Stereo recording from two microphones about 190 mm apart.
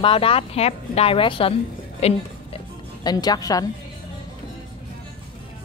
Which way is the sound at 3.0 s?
20° left (ahead or behind).